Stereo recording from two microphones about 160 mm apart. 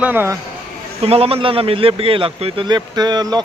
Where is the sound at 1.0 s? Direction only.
40° right (ahead or behind).